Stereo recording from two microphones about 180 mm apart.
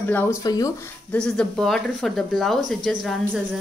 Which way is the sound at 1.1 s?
5° left (ahead or behind).